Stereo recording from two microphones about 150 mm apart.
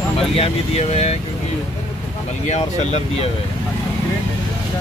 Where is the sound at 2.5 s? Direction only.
45° left (ahead or behind).